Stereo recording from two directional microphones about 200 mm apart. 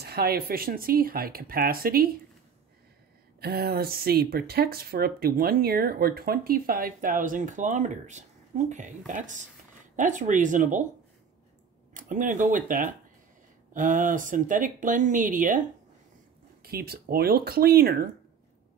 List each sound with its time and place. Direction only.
0.0 s speech: 50° right (ahead or behind)
3.3 s speech: 50° right (ahead or behind)
11.9 s speech: 40° right (ahead or behind)
16.6 s speech: 50° right (ahead or behind)